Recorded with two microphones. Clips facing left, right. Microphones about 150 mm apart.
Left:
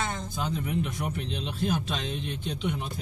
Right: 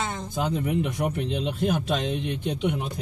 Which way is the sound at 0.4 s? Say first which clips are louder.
Right 5 dB; 60° right (ahead or behind).